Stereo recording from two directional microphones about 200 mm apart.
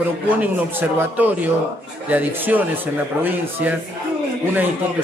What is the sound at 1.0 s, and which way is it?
A man's voice, 10° right (ahead or behind).